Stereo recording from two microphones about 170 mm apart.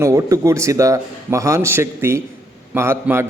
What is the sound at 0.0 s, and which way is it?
A man's voice, 20° right (ahead or behind).